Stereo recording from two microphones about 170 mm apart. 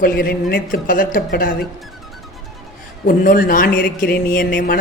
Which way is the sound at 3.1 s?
55° left (ahead or behind).